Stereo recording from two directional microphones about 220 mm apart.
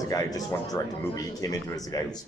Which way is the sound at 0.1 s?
15° left (ahead or behind).